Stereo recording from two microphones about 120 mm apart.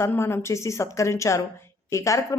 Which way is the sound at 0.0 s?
20° left (ahead or behind).